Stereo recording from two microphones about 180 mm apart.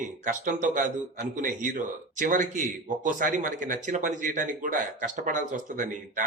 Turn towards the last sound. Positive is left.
turn(degrees=-45)  # may be behind; listen again after turning